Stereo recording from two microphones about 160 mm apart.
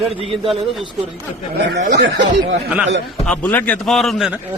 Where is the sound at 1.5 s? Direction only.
90° right.